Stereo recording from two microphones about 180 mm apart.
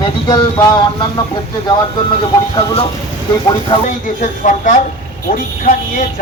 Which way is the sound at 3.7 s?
25° left (ahead or behind).